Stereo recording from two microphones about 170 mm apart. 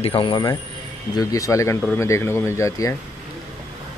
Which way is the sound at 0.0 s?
30° left (ahead or behind).